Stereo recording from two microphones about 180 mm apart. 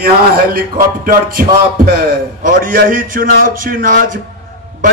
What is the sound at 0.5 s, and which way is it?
Speech, 50° right (ahead or behind).